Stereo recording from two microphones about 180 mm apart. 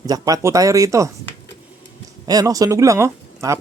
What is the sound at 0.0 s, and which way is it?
Speech, 20° right (ahead or behind).